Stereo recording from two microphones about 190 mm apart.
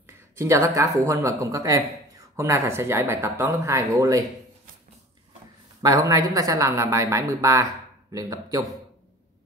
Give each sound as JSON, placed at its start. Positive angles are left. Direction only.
{"t": 0.0, "sound": "speech", "side_deg": -15}
{"t": 5.8, "sound": "speech", "side_deg": -20}